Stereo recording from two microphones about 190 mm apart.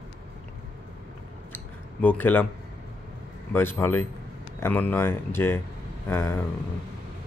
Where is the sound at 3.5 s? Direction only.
10° left (ahead or behind).